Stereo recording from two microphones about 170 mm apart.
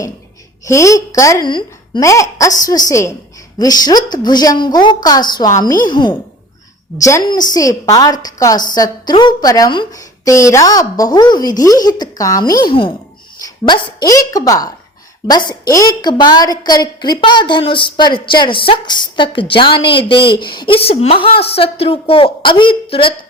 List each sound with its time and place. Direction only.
0.6 s a woman's voice: 20° left (ahead or behind)
7.2 s a woman's voice: 25° left (ahead or behind)